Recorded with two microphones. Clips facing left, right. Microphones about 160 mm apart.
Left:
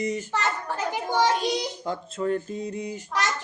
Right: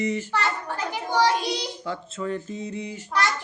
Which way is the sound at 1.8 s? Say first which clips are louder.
Left 2 dB; 45° left (ahead or behind).